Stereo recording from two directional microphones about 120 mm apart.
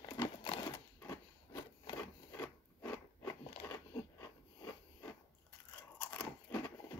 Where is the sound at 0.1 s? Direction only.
35° left (ahead or behind).